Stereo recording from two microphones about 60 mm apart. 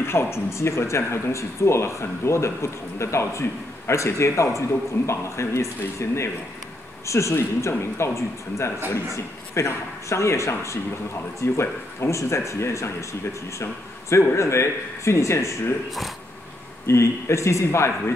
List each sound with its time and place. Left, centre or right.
0.0 s speech: left
16.8 s speech: left